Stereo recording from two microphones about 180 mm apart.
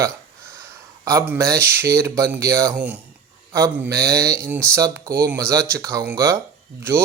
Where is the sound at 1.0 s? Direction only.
10° right (ahead or behind).